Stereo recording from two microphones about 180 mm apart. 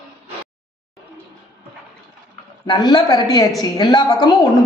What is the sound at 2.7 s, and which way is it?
A woman's voice, 25° left (ahead or behind).